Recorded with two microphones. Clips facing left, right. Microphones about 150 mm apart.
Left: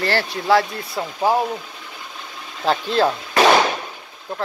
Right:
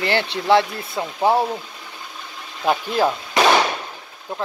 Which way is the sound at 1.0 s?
15° right (ahead or behind).